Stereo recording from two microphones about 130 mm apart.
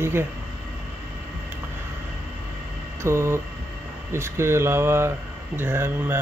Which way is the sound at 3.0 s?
20° right (ahead or behind).